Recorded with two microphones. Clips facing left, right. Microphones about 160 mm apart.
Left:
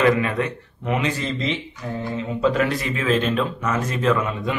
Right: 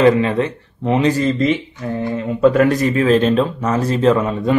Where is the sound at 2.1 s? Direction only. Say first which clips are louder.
Right 7 dB; 50° right (ahead or behind).